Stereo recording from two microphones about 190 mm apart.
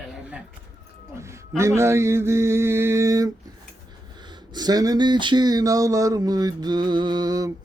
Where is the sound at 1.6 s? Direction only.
15° right (ahead or behind).